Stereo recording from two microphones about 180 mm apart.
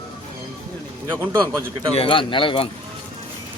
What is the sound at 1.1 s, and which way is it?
Speech, 20° right (ahead or behind).